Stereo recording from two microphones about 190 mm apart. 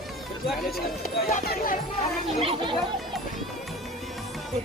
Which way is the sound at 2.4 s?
30° right (ahead or behind).